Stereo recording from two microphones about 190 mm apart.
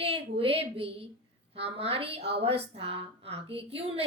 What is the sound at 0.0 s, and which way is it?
A woman's voice, 30° right (ahead or behind).